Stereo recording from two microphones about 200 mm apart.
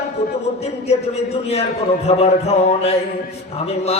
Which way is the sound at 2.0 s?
30° left (ahead or behind).